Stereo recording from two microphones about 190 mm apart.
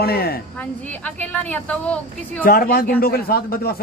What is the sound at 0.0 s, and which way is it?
Speech, 55° left (ahead or behind).